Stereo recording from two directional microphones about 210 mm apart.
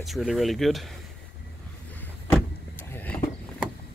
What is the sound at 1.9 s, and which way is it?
Vehicle, 10° left (ahead or behind).